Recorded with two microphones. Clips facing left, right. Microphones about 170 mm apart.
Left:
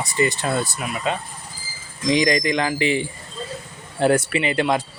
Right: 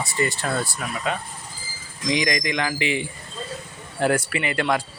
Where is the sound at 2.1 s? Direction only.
35° left (ahead or behind).